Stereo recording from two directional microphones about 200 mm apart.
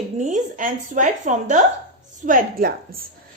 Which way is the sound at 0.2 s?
40° right (ahead or behind).